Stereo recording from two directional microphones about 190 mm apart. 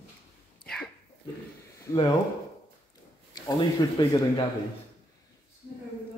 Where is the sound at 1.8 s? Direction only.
20° left (ahead or behind).